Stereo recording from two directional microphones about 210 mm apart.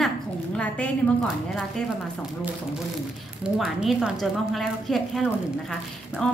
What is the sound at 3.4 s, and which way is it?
A woman's voice, 5° right (ahead or behind).